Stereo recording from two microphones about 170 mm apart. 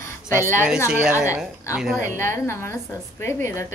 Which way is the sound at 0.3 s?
15° left (ahead or behind).